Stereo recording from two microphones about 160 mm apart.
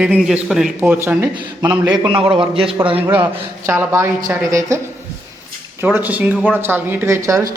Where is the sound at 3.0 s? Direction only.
10° right (ahead or behind).